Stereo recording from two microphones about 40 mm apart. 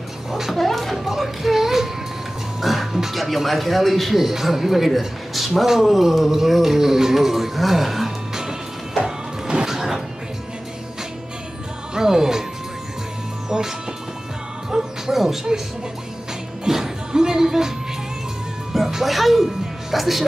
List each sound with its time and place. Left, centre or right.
0.3 s a sound: centre
2.6 s speech: centre
5.7 s a sound: centre
9.0 s music: right
9.7 s music: centre
11.9 s music: centre
13.5 s music: centre
15.1 s a sound: centre
16.6 s music: centre